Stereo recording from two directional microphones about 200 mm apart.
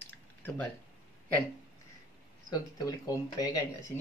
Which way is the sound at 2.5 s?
15° left (ahead or behind).